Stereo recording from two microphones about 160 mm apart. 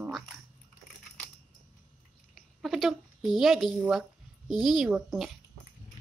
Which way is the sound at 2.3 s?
Centre (ahead or behind).